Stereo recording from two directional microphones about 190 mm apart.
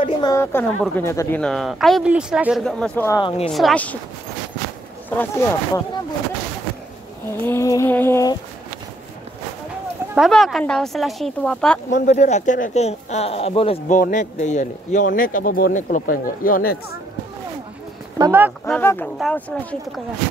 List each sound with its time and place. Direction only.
0.0 s a woman's voice: 20° left (ahead or behind)
3.2 s speech: 25° left (ahead or behind)
3.4 s a woman's voice: centre (ahead or behind)
5.1 s a sound: 10° left (ahead or behind)
7.4 s a sound: 15° left (ahead or behind)
10.1 s a woman's voice: centre (ahead or behind)
11.9 s speech: 40° left (ahead or behind)
13.9 s a man's voice: 45° left (ahead or behind)
18.1 s speech: 15° right (ahead or behind)
18.7 s a sound: 10° left (ahead or behind)